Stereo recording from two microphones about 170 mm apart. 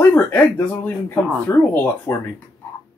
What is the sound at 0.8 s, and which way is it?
Speech, 15° left (ahead or behind).